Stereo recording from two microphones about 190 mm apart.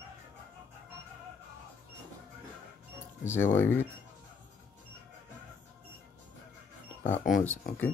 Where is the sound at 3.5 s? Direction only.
10° left (ahead or behind).